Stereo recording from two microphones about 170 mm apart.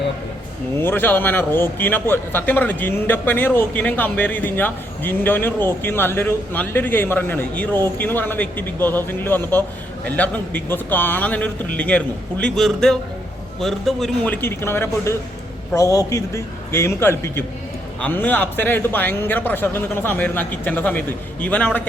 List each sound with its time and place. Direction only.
0.8 s a man's voice: 10° left (ahead or behind)
14.4 s a man's voice: 15° left (ahead or behind)